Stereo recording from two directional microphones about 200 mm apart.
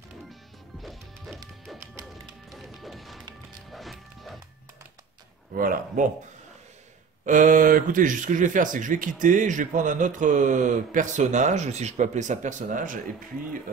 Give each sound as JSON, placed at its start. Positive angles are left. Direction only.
{"t": 0.3, "sound": "music", "side_deg": 0}
{"t": 5.5, "sound": "speech", "side_deg": -45}
{"t": 7.2, "sound": "speech", "side_deg": -40}